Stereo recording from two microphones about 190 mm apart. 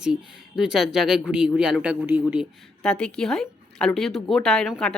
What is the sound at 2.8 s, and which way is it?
Speech, 5° left (ahead or behind).